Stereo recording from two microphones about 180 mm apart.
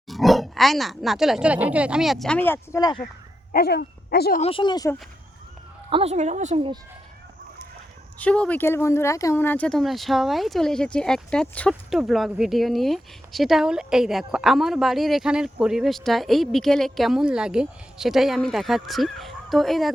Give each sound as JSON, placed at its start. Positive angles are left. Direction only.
{"t": 0.1, "sound": "speech", "side_deg": 0}
{"t": 3.5, "sound": "speech", "side_deg": 60}
{"t": 4.4, "sound": "speech", "side_deg": 30}
{"t": 5.9, "sound": "a woman's voice", "side_deg": -35}
{"t": 8.2, "sound": "speech", "side_deg": 5}